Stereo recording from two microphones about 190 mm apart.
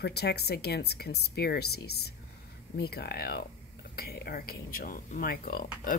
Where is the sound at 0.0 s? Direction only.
60° left (ahead or behind).